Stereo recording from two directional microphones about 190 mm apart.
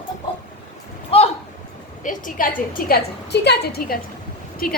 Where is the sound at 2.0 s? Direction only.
45° left (ahead or behind).